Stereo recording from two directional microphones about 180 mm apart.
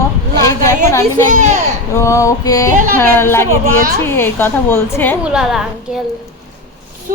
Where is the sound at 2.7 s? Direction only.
50° right (ahead or behind).